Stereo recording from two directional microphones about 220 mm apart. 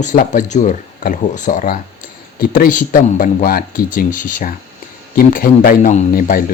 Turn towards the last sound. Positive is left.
turn(degrees=40)  # may be behind; listen again after turning